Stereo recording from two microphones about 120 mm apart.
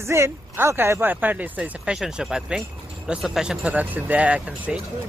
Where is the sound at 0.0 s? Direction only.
20° right (ahead or behind).